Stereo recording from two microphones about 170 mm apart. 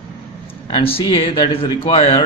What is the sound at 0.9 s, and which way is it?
A man's voice, 30° left (ahead or behind).